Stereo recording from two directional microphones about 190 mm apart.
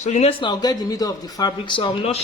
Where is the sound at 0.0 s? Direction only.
35° left (ahead or behind).